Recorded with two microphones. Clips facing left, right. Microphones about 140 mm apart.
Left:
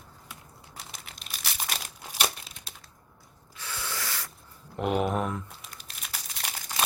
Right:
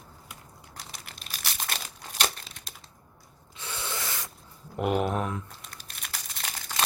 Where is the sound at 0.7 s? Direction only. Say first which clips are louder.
Even; centre (ahead or behind).